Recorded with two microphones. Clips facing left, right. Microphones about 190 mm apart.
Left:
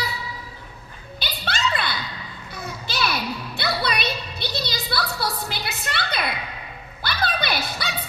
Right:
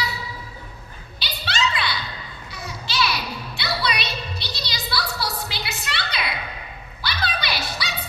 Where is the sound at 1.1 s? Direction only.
55° left (ahead or behind).